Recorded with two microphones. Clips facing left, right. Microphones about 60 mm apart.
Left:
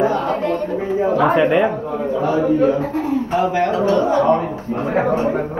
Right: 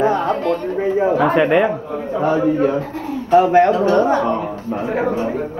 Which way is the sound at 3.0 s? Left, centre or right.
Centre.